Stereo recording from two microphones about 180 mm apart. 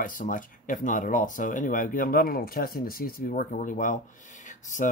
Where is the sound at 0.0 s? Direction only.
50° left (ahead or behind).